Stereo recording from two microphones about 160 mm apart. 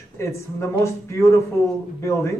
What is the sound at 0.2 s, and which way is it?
Speech, 15° left (ahead or behind).